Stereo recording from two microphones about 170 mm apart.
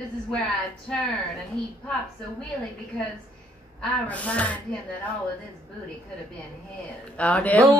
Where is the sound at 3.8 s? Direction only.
10° left (ahead or behind).